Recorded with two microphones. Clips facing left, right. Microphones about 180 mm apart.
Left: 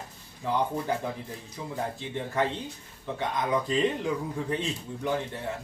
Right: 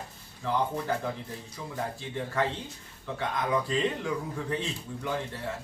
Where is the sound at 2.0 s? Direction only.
20° left (ahead or behind).